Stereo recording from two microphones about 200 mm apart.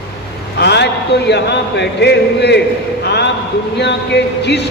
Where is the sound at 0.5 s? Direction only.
55° left (ahead or behind).